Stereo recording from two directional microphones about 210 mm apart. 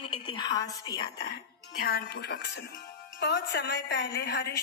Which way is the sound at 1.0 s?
50° left (ahead or behind).